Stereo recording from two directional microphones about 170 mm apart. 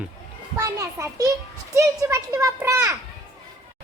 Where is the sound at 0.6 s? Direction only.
20° right (ahead or behind).